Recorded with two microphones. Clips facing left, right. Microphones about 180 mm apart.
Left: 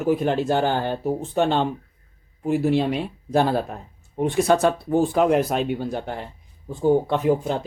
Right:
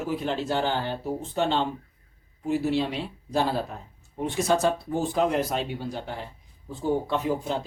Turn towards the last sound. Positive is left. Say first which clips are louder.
# left 6 dB
turn(degrees=55)  # may be behind; listen again after turning